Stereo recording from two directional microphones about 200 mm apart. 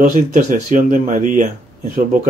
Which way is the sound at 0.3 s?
40° right (ahead or behind).